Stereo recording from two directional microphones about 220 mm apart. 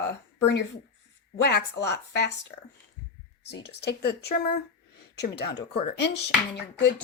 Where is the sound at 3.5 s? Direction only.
50° left (ahead or behind).